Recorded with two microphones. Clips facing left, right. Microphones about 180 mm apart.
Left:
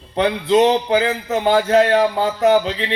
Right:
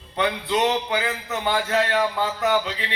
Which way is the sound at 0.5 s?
40° left (ahead or behind).